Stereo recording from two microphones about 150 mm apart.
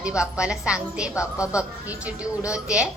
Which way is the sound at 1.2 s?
20° left (ahead or behind).